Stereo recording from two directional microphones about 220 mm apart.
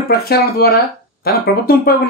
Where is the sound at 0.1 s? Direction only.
45° left (ahead or behind).